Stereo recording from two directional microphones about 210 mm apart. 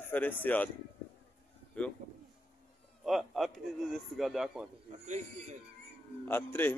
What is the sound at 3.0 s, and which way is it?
Speech, centre (ahead or behind).